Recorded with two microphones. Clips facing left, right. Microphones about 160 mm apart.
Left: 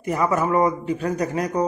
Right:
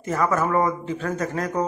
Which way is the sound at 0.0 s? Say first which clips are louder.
Left 1 dB; 15° left (ahead or behind).